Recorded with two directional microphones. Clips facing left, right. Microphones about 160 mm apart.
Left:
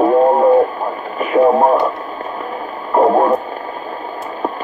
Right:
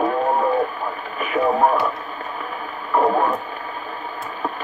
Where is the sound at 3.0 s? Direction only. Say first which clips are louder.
Left 6 dB; 40° left (ahead or behind).